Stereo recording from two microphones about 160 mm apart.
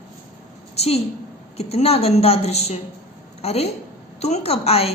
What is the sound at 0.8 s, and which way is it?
A woman's voice, 40° left (ahead or behind).